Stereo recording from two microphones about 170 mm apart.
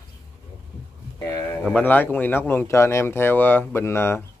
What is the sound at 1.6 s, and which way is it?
Speech, 10° left (ahead or behind).